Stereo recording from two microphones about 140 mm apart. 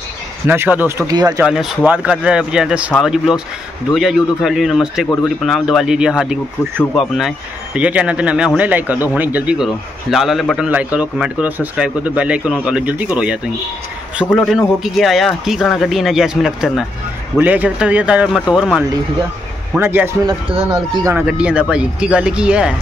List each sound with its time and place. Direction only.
0.5 s speech: 15° right (ahead or behind)
1.4 s a man's voice: 5° right (ahead or behind)
19.8 s a man's voice: 15° right (ahead or behind)
20.2 s speech: 40° right (ahead or behind)
21.0 s a man's voice: 10° right (ahead or behind)